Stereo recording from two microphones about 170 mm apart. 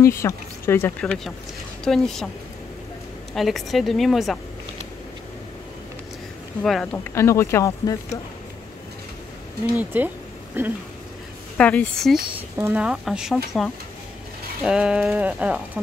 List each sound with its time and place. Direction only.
0.0 s speech: 15° left (ahead or behind)
3.3 s speech: centre (ahead or behind)
6.6 s speech: 5° left (ahead or behind); by 8.0 s 20° left (ahead or behind)
9.8 s speech: 10° right (ahead or behind)
11.5 s speech: 10° left (ahead or behind)
12.5 s speech: 10° right (ahead or behind)